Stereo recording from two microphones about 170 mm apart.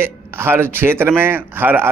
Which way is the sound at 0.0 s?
15° right (ahead or behind).